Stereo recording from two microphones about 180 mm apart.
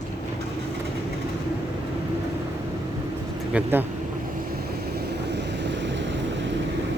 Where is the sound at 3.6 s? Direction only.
10° right (ahead or behind).